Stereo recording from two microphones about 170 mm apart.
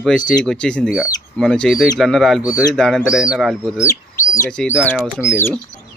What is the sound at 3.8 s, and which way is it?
Chicken, 20° left (ahead or behind).